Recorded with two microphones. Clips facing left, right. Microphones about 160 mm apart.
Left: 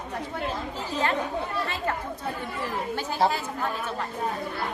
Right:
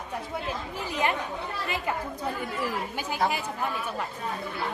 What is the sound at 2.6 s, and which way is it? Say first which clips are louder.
Speech: left 3 dB; 15° right (ahead or behind).